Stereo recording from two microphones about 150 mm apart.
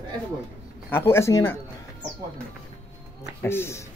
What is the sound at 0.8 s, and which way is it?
Speech, 15° left (ahead or behind).